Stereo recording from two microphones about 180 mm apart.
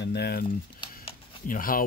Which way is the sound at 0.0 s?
65° left (ahead or behind).